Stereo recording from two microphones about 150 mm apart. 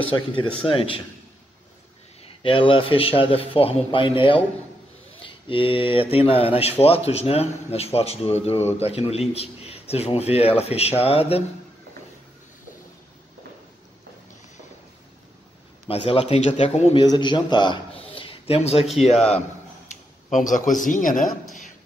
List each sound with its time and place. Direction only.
0.1 s speech: 35° left (ahead or behind)
2.2 s a man's voice: 35° left (ahead or behind)
16.1 s speech: 40° left (ahead or behind)
17.0 s a man's voice: 30° left (ahead or behind)
20.2 s speech: 60° left (ahead or behind)